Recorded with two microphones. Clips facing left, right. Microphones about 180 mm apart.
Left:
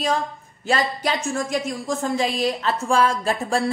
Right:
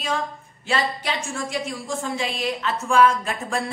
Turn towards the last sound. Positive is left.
turn(degrees=35)  # may be behind; listen again after turning